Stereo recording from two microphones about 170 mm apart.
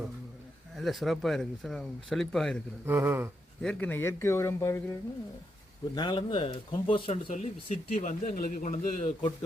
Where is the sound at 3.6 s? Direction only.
5° left (ahead or behind).